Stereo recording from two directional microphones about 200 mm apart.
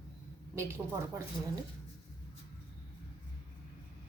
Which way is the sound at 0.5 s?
15° right (ahead or behind).